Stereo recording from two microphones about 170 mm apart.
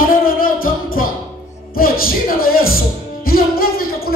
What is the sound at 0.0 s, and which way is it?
Music, 55° left (ahead or behind).